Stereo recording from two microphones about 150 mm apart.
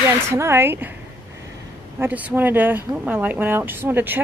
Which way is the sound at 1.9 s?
10° right (ahead or behind).